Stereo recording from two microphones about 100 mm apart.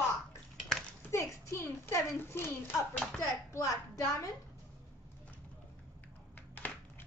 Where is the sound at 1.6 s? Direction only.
30° left (ahead or behind).